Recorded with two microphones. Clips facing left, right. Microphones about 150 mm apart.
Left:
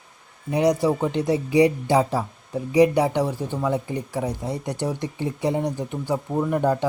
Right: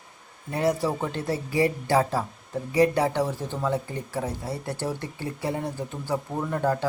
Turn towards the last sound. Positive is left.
turn(degrees=15)  # may be behind; listen again after turning